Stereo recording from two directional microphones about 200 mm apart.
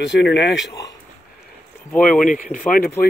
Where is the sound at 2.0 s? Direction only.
40° left (ahead or behind).